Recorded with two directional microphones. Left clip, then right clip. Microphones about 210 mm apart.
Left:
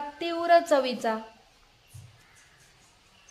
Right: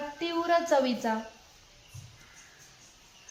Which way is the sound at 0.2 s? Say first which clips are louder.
Left 5 dB; 45° left (ahead or behind).